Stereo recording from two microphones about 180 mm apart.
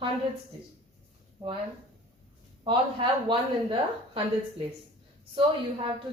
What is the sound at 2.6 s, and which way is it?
Speech, 25° right (ahead or behind).